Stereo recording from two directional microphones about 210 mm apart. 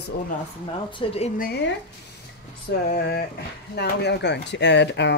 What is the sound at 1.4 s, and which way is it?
Speech, 55° left (ahead or behind).